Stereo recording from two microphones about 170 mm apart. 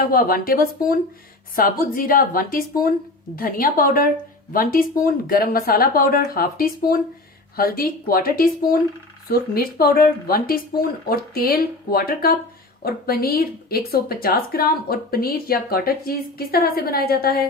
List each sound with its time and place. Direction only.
0.0 s a woman's voice: 60° left (ahead or behind)